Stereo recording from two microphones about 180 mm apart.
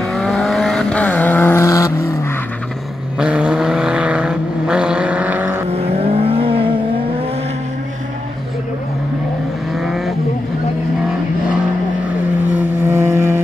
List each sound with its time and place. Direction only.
0.1 s vehicle: centre (ahead or behind); by 2.1 s 15° left (ahead or behind)
3.2 s vehicle: 5° right (ahead or behind)
5.7 s vehicle: 35° right (ahead or behind)
9.8 s vehicle: centre (ahead or behind)
12.5 s vehicle: 10° right (ahead or behind)